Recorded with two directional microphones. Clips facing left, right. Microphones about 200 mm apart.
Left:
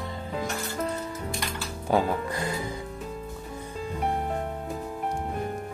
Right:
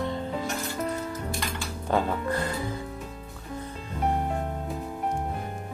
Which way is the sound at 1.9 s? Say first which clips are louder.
Left 1 dB; 15° left (ahead or behind).